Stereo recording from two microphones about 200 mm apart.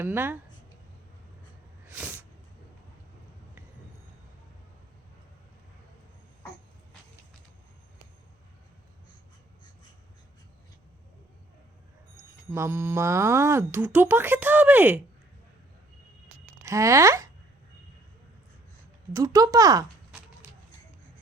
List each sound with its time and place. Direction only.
0.0 s speech: 10° right (ahead or behind)
1.9 s a sound: 10° right (ahead or behind)
12.1 s speech: 10° right (ahead or behind)
16.6 s speech: 15° right (ahead or behind)
19.1 s speech: 15° right (ahead or behind)